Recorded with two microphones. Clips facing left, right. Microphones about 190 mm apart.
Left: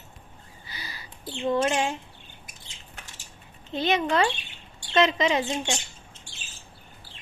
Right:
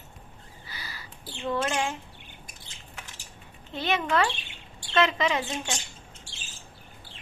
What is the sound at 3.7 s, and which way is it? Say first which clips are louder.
Speech: left 3 dB; 20° left (ahead or behind).